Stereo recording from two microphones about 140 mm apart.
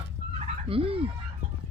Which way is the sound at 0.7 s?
40° right (ahead or behind).